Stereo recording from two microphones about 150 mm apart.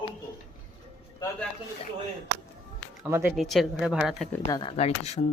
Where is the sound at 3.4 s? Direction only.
Centre (ahead or behind).